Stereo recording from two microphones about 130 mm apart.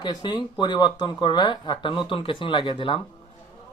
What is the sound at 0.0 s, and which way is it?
Speech, 35° left (ahead or behind).